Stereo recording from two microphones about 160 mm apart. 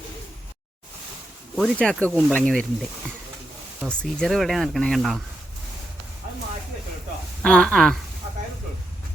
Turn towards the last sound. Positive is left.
turn(degrees=0)  # may be behind; listen again after turning